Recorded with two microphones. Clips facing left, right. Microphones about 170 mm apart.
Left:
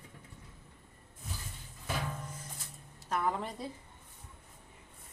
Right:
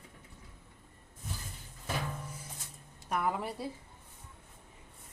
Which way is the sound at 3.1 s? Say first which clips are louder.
Even; 10° right (ahead or behind).